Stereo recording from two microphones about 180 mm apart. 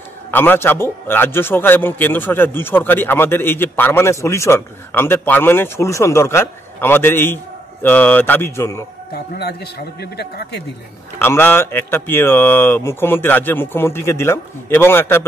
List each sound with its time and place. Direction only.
0.3 s a man's voice: 10° left (ahead or behind)
9.1 s a man's voice: 60° left (ahead or behind)
11.1 s a man's voice: 10° left (ahead or behind)